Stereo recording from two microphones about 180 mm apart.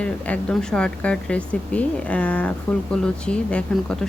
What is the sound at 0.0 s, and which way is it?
Speech, 5° left (ahead or behind).